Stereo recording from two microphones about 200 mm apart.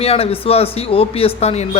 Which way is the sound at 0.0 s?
30° left (ahead or behind).